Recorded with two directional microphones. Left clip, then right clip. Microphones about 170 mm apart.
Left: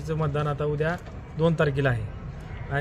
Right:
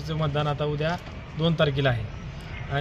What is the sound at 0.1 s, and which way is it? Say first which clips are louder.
A man's voice: even; 10° left (ahead or behind).